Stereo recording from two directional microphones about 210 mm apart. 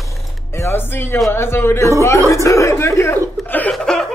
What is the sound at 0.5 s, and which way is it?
A man's voice, 10° left (ahead or behind).